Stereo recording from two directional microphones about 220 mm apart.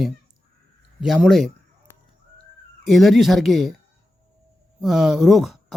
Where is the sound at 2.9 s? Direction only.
Centre (ahead or behind).